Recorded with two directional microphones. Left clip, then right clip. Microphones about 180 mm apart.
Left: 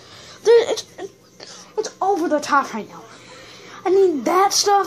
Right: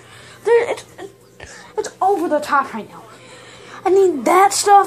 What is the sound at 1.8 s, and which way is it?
Speech, 25° left (ahead or behind).